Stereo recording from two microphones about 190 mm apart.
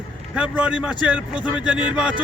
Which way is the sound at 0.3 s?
5° right (ahead or behind).